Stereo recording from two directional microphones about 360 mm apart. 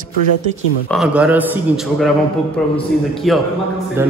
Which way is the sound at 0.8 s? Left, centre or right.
Centre.